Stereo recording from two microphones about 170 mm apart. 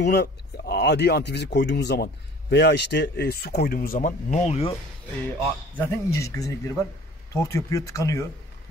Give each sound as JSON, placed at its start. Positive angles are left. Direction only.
{"t": 0.0, "sound": "speech", "side_deg": 70}
{"t": 5.8, "sound": "speech", "side_deg": 15}